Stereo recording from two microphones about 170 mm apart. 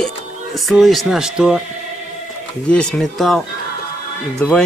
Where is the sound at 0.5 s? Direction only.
Centre (ahead or behind).